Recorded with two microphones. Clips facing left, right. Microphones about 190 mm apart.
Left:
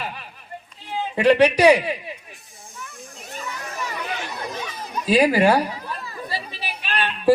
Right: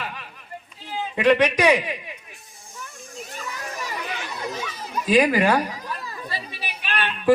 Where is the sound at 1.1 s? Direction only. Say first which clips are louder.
Left 2 dB; 30° left (ahead or behind).